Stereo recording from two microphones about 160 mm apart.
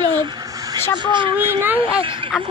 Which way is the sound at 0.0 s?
25° right (ahead or behind).